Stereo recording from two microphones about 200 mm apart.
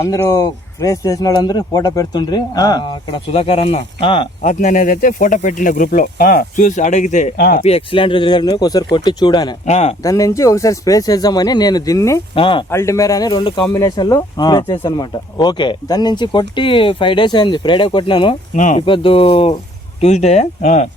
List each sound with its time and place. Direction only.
0.0 s speech: 15° left (ahead or behind)
4.4 s speech: 40° left (ahead or behind)
7.6 s speech: 30° left (ahead or behind)
9.6 s speech: 30° left (ahead or behind)
10.0 s speech: 15° left (ahead or behind)
12.7 s speech: 15° left (ahead or behind)
18.5 s speech: 40° left (ahead or behind)
18.8 s speech: 25° left (ahead or behind)